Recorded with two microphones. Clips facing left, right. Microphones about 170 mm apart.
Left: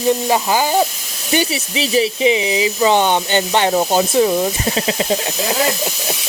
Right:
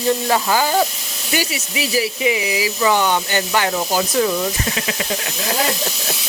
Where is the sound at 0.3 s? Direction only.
15° left (ahead or behind).